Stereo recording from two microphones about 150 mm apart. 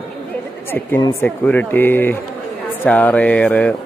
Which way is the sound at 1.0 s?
20° left (ahead or behind).